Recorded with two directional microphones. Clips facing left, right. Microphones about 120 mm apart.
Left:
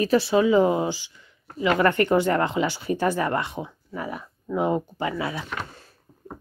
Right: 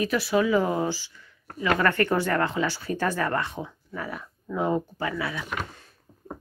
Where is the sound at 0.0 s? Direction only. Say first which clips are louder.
Left 4 dB; 30° left (ahead or behind).